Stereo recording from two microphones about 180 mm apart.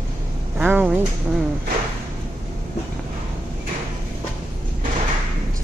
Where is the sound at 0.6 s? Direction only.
10° right (ahead or behind).